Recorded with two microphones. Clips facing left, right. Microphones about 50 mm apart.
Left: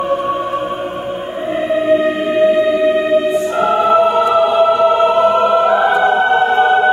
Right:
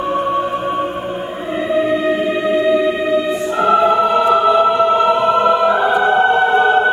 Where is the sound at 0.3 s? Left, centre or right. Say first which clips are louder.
Even; left.